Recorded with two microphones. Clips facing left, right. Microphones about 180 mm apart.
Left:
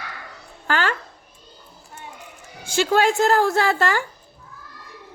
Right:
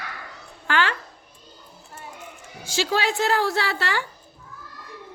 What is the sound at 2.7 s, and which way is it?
A woman's voice, 50° left (ahead or behind).